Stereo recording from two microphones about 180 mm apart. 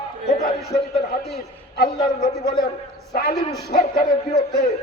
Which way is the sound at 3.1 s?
60° left (ahead or behind).